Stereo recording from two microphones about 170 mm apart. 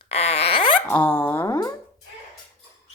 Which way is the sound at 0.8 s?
10° left (ahead or behind).